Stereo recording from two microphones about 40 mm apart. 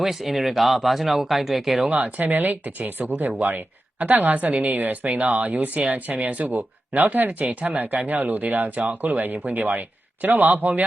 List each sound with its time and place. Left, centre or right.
0.0 s speech: centre
1.9 s speech: right